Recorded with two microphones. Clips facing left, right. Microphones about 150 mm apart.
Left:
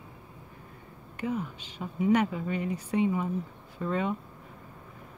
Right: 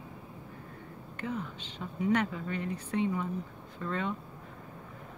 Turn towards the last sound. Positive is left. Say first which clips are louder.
# left 4 dB
turn(degrees=10)  # may be behind; listen again after turning